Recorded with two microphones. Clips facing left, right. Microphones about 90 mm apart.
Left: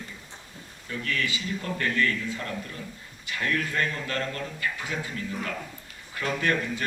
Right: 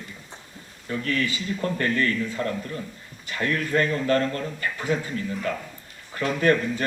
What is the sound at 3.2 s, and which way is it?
A man's voice, 35° right (ahead or behind).